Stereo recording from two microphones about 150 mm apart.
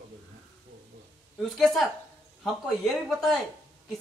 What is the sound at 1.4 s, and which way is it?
Speech, centre (ahead or behind).